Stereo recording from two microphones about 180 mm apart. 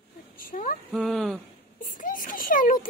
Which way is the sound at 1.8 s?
50° left (ahead or behind).